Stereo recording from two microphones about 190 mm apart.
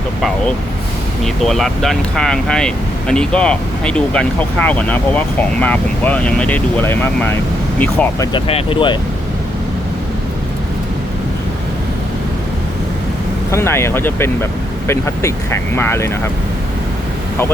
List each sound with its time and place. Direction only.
0.2 s speech: centre (ahead or behind)
8.3 s speech: 30° left (ahead or behind)
13.5 s speech: 15° left (ahead or behind)